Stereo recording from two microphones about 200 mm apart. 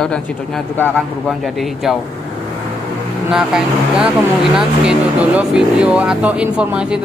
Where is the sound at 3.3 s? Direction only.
5° right (ahead or behind).